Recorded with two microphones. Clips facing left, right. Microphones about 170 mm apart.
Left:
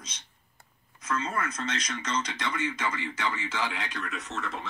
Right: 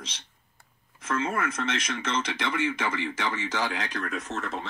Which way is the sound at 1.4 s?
25° right (ahead or behind).